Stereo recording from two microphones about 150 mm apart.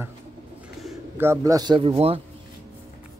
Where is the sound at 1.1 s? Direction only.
15° right (ahead or behind); by 2.2 s 40° right (ahead or behind).